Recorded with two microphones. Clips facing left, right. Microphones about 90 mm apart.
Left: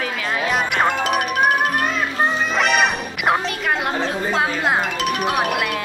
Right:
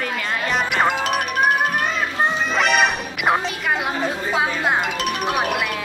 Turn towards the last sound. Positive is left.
turn(degrees=0)  # may be behind; listen again after turning